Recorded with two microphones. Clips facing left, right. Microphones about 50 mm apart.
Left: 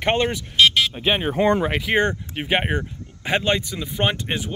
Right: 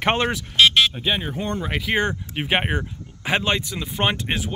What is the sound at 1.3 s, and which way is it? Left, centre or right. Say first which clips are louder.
Speech: left 9 dB; left.